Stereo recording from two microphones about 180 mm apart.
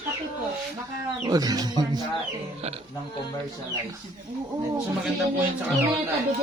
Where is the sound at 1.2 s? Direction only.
20° right (ahead or behind).